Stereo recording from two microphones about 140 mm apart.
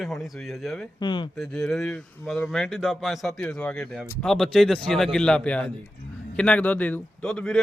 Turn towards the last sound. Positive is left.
turn(degrees=0)  # may be behind; listen again after turning